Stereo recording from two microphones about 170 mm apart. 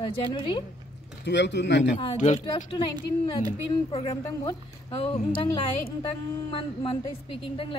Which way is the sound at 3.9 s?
35° left (ahead or behind).